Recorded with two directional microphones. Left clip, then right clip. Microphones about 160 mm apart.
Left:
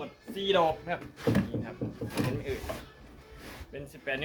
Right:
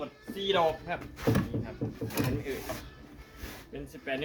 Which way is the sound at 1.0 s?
40° right (ahead or behind).